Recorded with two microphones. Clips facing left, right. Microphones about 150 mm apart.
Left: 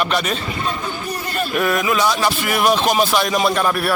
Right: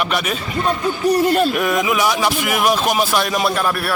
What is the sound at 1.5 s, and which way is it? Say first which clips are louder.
Speech: even; 15° right (ahead or behind).